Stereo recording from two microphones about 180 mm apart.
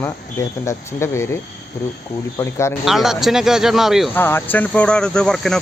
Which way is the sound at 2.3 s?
15° left (ahead or behind).